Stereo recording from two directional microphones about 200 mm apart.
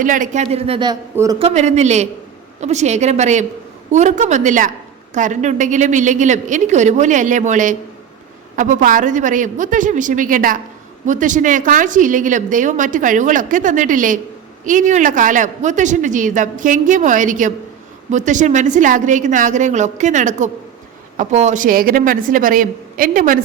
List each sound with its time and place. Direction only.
0.0 s a woman's voice: 40° right (ahead or behind); by 0.9 s 25° right (ahead or behind)
1.1 s a man's voice: 15° right (ahead or behind)
1.4 s a woman's voice: 30° right (ahead or behind)